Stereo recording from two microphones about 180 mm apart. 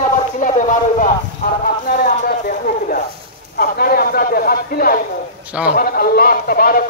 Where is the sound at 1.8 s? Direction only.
55° left (ahead or behind).